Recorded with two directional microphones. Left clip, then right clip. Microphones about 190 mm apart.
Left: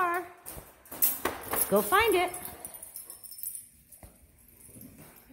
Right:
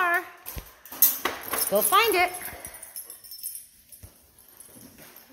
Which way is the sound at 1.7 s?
25° left (ahead or behind).